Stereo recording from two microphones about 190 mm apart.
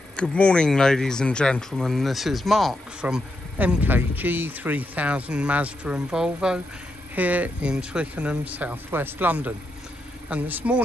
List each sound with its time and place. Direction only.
0.1 s speech: 5° left (ahead or behind)